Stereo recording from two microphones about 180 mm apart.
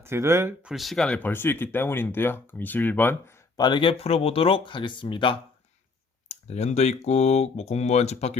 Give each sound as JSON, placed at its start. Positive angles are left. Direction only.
{"t": 0.0, "sound": "speech", "side_deg": -15}
{"t": 0.7, "sound": "speech", "side_deg": 0}
{"t": 3.6, "sound": "speech", "side_deg": 25}